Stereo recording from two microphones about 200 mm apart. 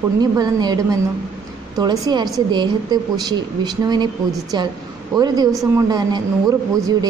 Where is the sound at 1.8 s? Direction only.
20° right (ahead or behind).